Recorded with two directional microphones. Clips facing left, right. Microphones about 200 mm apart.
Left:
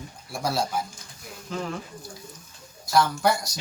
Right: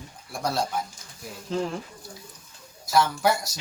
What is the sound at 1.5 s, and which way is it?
Speech, 30° right (ahead or behind).